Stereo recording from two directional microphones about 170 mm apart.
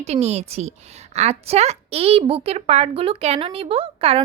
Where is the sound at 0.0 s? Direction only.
40° right (ahead or behind).